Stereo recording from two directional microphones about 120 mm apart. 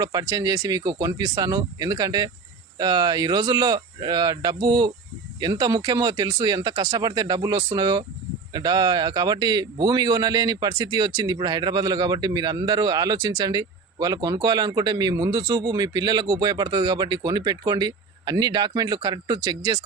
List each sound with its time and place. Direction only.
0.0 s a man's voice: 35° right (ahead or behind)